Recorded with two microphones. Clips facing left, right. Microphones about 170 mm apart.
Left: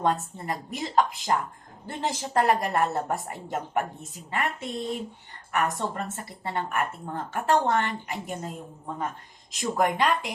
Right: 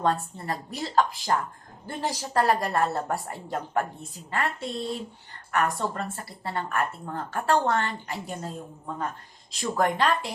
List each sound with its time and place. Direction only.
0.0 s a woman's voice: 15° left (ahead or behind)